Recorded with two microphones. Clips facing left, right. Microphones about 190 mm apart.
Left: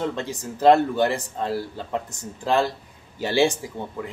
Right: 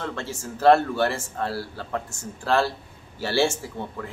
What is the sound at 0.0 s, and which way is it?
Speech, 15° left (ahead or behind).